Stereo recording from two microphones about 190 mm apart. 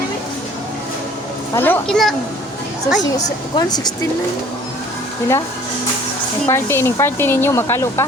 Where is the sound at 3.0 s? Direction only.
20° left (ahead or behind).